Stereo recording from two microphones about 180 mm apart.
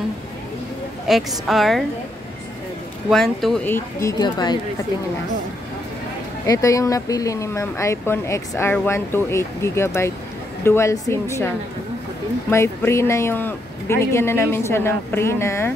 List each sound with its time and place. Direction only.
1.0 s a woman's voice: centre (ahead or behind)
3.1 s speech: centre (ahead or behind); by 4.6 s 25° left (ahead or behind)
6.4 s speech: 20° left (ahead or behind)